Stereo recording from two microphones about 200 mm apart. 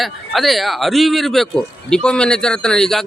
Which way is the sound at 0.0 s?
Centre (ahead or behind).